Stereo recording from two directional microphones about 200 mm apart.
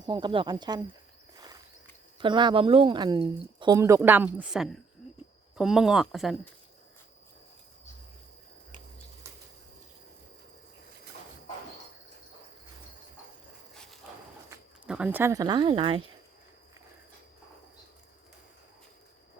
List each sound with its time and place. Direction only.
0.0 s speech: 20° right (ahead or behind)
2.1 s speech: 25° right (ahead or behind); by 6.3 s centre (ahead or behind)
14.5 s speech: 5° right (ahead or behind); by 16.0 s 25° right (ahead or behind)